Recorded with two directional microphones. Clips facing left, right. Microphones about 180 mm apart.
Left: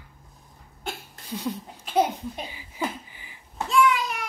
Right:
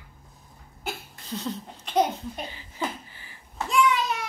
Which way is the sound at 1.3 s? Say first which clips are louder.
Left 1 dB; 10° left (ahead or behind).